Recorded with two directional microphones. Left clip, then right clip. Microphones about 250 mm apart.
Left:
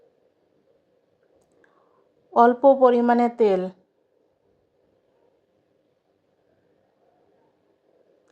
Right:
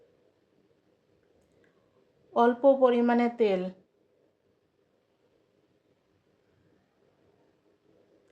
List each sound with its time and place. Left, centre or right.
2.3 s a woman's voice: centre